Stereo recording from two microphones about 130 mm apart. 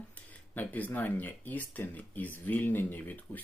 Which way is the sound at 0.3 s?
15° left (ahead or behind).